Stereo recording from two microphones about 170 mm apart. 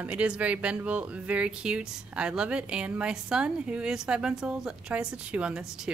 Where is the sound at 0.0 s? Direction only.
10° right (ahead or behind).